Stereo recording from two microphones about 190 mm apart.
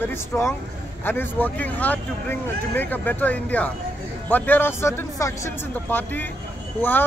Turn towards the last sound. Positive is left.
turn(degrees=10)  # may be behind; listen again after turning